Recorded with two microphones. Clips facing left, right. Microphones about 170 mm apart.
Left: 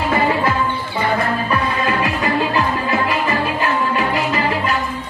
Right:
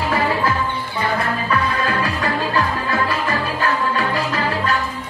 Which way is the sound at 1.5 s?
20° left (ahead or behind).